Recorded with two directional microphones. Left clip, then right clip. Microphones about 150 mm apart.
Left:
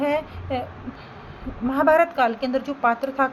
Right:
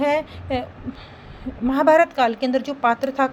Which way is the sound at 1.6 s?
55° right (ahead or behind).